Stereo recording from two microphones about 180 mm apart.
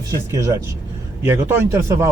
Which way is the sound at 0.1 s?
15° right (ahead or behind).